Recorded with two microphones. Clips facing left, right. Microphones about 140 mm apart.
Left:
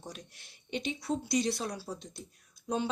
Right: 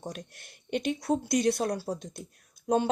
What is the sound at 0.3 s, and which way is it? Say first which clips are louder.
Speech: right 5 dB; 55° right (ahead or behind).